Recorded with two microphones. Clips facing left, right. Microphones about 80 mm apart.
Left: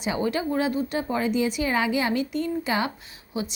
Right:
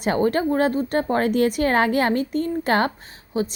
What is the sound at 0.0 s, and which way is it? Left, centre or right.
A woman's voice, right.